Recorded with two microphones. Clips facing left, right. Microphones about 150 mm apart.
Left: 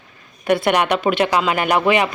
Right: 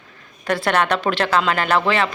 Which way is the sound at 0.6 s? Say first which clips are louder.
Right 1 dB; 10° left (ahead or behind).